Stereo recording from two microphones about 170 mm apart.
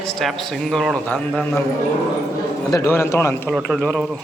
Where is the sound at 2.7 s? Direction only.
15° left (ahead or behind).